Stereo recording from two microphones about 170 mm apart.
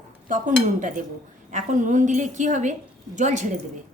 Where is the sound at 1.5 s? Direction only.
50° right (ahead or behind).